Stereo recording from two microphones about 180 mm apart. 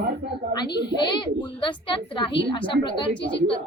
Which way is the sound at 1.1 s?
25° left (ahead or behind).